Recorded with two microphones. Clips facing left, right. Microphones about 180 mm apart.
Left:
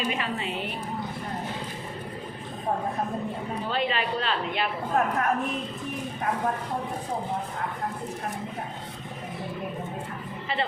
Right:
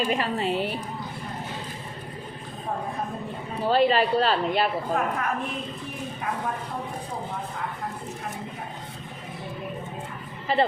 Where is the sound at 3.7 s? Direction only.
35° right (ahead or behind).